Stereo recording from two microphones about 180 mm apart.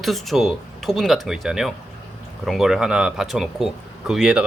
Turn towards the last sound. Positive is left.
turn(degrees=-5)  # may be behind; listen again after turning